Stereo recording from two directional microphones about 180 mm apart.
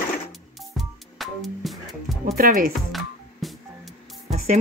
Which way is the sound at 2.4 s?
50° right (ahead or behind).